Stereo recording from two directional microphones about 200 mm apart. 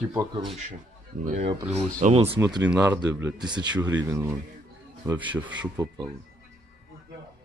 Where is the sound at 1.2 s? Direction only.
40° right (ahead or behind).